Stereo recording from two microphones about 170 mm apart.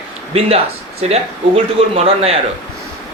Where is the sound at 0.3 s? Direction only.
35° right (ahead or behind).